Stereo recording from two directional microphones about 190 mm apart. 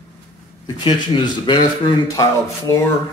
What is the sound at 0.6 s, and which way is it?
A man's voice, 25° left (ahead or behind).